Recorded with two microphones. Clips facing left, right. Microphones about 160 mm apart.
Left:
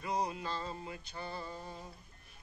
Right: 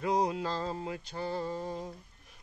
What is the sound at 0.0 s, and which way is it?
Music, 90° right.